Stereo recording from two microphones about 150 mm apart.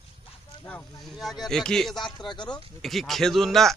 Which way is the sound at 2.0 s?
30° left (ahead or behind).